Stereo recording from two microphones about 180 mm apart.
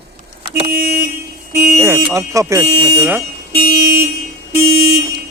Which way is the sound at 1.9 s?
15° right (ahead or behind).